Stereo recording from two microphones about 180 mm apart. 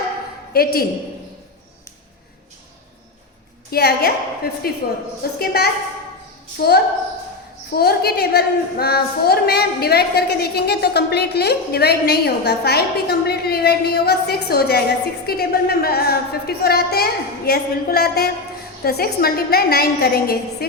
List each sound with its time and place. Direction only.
0.5 s a woman's voice: 55° left (ahead or behind)
3.7 s a woman's voice: 60° left (ahead or behind)